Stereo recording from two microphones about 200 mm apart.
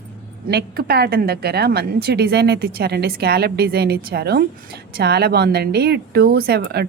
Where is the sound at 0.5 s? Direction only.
50° right (ahead or behind).